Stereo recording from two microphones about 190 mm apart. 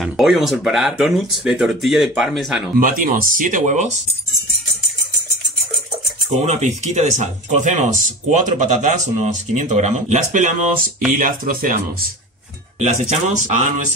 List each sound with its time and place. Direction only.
0.0 s speech: centre (ahead or behind)
2.8 s speech: 45° right (ahead or behind)
6.4 s speech: 35° right (ahead or behind)